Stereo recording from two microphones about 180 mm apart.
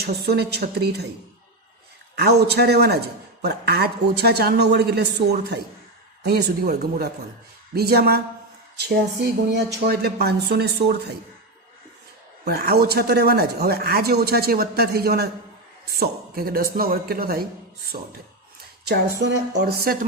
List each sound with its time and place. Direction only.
0.0 s speech: 65° right (ahead or behind)
2.1 s speech: 65° right (ahead or behind)
12.5 s speech: 60° right (ahead or behind)
18.9 s speech: 65° right (ahead or behind)